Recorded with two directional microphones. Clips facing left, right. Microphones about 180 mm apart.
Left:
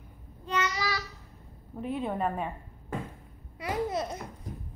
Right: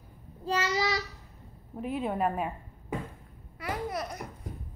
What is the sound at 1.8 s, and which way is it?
Speech, 5° right (ahead or behind).